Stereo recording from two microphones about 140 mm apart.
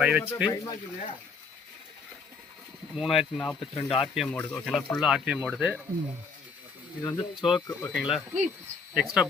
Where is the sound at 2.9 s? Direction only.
Centre (ahead or behind).